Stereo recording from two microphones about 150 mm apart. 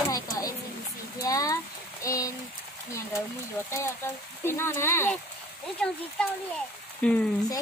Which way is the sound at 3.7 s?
15° left (ahead or behind).